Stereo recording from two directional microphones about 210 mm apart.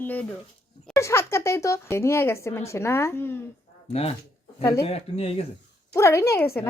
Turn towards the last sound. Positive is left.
turn(degrees=10)  # may be behind; listen again after turning